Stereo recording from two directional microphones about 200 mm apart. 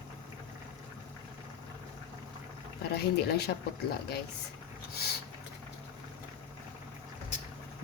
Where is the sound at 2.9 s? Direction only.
55° left (ahead or behind).